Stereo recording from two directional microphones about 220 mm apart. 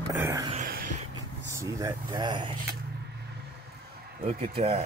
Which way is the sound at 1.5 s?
15° right (ahead or behind).